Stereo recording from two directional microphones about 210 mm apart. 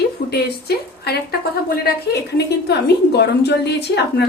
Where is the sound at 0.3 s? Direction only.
50° left (ahead or behind).